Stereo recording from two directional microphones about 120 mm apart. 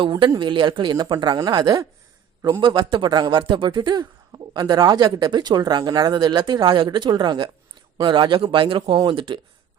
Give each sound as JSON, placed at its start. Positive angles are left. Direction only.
{"t": 0.0, "sound": "speech", "side_deg": -45}